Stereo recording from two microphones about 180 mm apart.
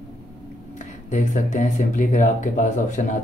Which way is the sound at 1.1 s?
40° left (ahead or behind).